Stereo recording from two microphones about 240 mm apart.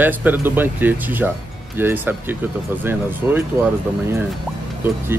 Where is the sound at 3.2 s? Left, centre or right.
Centre.